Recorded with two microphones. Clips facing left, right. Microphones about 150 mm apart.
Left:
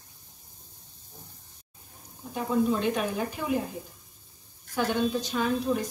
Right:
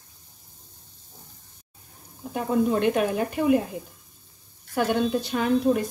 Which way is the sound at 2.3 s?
60° right (ahead or behind).